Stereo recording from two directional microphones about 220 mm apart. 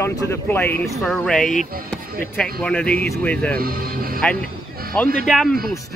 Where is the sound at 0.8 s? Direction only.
Centre (ahead or behind).